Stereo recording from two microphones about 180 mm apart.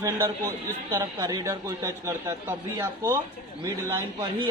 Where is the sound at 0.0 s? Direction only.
20° right (ahead or behind).